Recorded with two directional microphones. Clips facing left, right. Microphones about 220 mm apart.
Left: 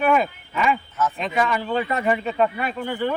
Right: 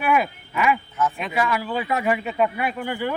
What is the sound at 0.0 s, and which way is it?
Speech, 5° right (ahead or behind).